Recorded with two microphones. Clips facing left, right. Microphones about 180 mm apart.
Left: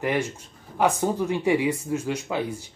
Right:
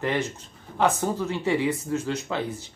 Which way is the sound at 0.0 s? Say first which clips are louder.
Left 1 dB; 10° left (ahead or behind).